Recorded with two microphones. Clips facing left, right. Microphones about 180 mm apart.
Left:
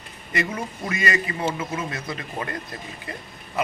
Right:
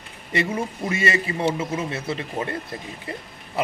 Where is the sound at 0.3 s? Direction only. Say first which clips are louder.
Right 3 dB; 25° right (ahead or behind).